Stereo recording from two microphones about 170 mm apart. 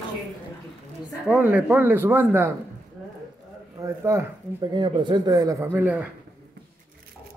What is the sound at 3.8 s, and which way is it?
Speech, 15° right (ahead or behind).